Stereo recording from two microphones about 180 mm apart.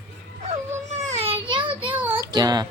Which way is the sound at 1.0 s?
35° right (ahead or behind).